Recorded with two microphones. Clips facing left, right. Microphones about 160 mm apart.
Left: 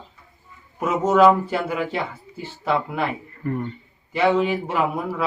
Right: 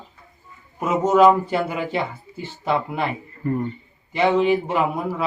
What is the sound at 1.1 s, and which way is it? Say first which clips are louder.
A man's voice: right 1 dB; 10° right (ahead or behind).